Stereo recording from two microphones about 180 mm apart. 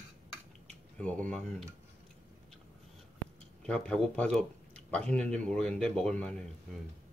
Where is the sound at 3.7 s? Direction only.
5° left (ahead or behind).